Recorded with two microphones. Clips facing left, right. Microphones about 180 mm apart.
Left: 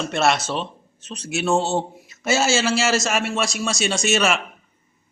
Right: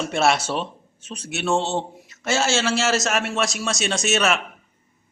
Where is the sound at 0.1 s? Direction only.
5° right (ahead or behind).